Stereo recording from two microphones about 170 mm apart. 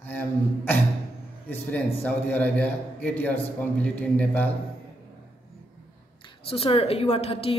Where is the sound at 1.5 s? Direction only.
10° left (ahead or behind).